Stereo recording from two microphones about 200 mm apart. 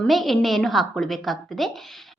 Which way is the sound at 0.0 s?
Centre (ahead or behind).